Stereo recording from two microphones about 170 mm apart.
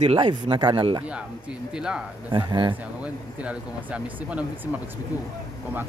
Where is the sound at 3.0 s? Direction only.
10° right (ahead or behind).